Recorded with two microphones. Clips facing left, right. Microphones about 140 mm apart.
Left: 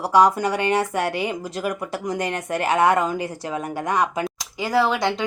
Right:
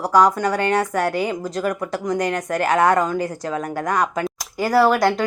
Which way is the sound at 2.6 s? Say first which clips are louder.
Right 1 dB; 25° left (ahead or behind).